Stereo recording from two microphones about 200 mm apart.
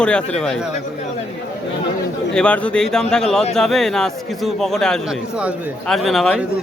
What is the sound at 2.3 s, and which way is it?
A man's voice, 5° left (ahead or behind).